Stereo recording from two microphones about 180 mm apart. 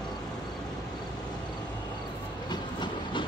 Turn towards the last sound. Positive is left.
turn(degrees=25)  # may be behind; listen again after turning